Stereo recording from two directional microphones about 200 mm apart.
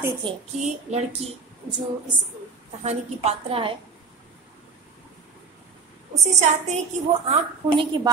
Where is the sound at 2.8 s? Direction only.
30° right (ahead or behind).